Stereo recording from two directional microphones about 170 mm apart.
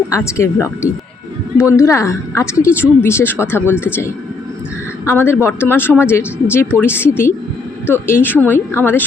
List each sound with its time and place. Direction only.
0.1 s speech: 15° left (ahead or behind)
5.0 s speech: 15° left (ahead or behind)